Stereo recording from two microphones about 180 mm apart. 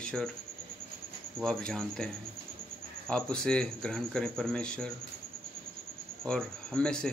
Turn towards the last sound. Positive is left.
turn(degrees=5)  # may be behind; listen again after turning